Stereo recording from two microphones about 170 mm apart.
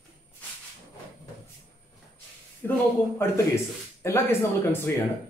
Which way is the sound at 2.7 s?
15° left (ahead or behind).